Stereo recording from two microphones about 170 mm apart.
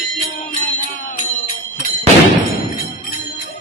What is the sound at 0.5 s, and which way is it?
Music, 45° left (ahead or behind).